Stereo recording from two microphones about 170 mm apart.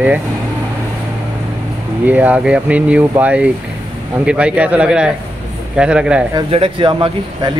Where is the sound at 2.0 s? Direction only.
10° right (ahead or behind).